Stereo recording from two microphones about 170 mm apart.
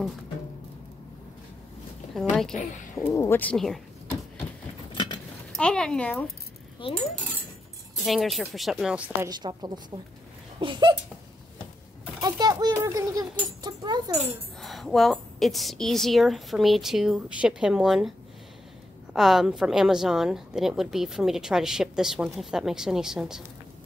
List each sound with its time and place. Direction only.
2.3 s a woman's voice: centre (ahead or behind)
3.0 s speech: 15° left (ahead or behind)
4.9 s keys jangling: 25° left (ahead or behind)
5.6 s a woman's voice: 5° left (ahead or behind)
6.8 s speech: 30° left (ahead or behind)
8.0 s a woman's voice: centre (ahead or behind)
9.3 s speech: 25° right (ahead or behind)
12.2 s a sound: 25° right (ahead or behind)
12.7 s speech: 20° right (ahead or behind)
14.1 s a woman's voice: centre (ahead or behind)
19.1 s a woman's voice: centre (ahead or behind)